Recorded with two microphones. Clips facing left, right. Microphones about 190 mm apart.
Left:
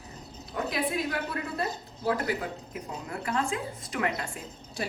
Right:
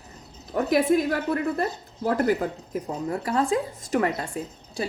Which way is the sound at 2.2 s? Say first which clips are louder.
Right 8 dB; 40° right (ahead or behind).